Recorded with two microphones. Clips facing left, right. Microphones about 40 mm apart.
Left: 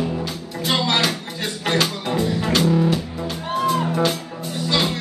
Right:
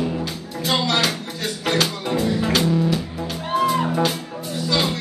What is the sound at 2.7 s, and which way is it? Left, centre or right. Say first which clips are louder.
Music: left 2 dB; centre.